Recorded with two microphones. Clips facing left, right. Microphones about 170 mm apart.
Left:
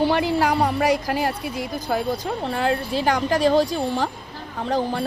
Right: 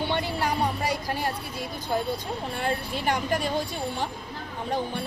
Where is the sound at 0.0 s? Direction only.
90° left.